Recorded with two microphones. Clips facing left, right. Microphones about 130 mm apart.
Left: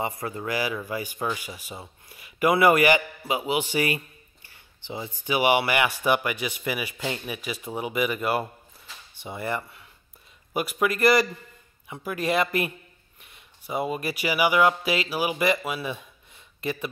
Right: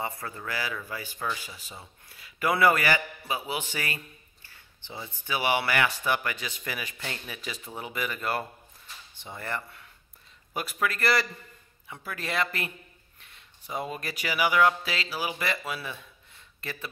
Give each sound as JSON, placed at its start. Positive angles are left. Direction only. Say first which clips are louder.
{"t": 0.0, "sound": "speech", "louder": "left 5 dB", "side_deg": 15}